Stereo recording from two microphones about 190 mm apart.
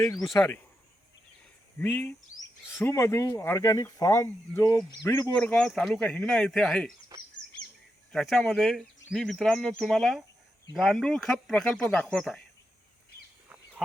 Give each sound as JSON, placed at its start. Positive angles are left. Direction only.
{"t": 0.0, "sound": "speech", "side_deg": 20}
{"t": 1.8, "sound": "speech", "side_deg": 5}
{"t": 8.1, "sound": "speech", "side_deg": 0}